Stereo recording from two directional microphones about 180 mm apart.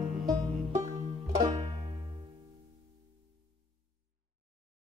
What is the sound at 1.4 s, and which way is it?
Banjo, 20° right (ahead or behind).